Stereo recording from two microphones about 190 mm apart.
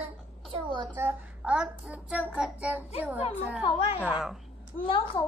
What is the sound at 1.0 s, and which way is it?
Child singing, 5° right (ahead or behind).